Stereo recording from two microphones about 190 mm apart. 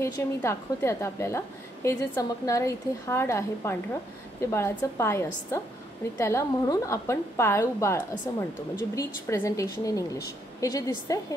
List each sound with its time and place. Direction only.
0.0 s a woman's voice: 15° left (ahead or behind)